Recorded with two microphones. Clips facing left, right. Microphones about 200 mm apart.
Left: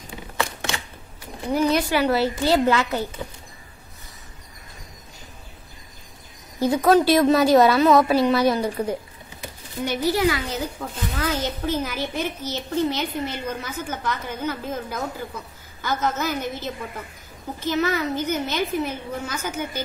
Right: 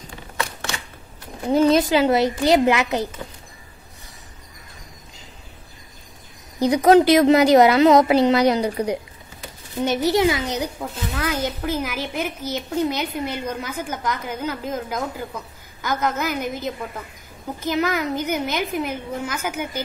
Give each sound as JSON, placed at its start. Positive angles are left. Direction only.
{"t": 1.5, "sound": "a woman's voice", "side_deg": -25}
{"t": 6.6, "sound": "a woman's voice", "side_deg": -15}